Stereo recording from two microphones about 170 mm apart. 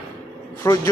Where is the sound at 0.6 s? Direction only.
15° left (ahead or behind).